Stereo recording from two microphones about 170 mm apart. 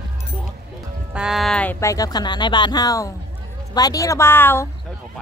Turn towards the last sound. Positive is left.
turn(degrees=15)  # may be behind; listen again after turning